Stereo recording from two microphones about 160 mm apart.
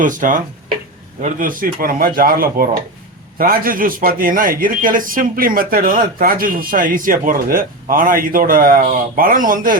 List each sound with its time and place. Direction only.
0.0 s speech: 55° right (ahead or behind)